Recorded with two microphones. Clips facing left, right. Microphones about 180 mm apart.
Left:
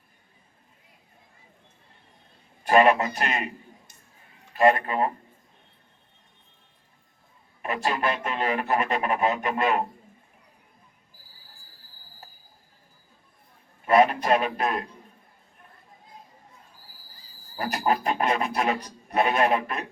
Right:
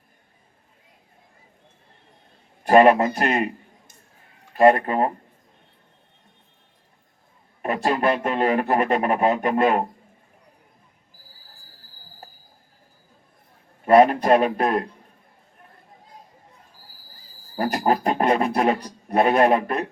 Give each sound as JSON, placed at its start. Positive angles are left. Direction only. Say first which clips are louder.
{"t": 2.6, "sound": "a man's voice", "louder": "right 5 dB", "side_deg": -40}
{"t": 7.6, "sound": "speech", "louder": "right 5 dB", "side_deg": -40}
{"t": 13.8, "sound": "speech", "louder": "right 5 dB", "side_deg": -40}
{"t": 17.6, "sound": "speech", "louder": "right 4 dB", "side_deg": -40}